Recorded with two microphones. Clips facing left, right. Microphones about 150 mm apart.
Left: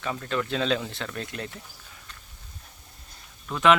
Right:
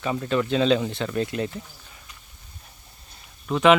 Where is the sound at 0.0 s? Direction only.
10° right (ahead or behind).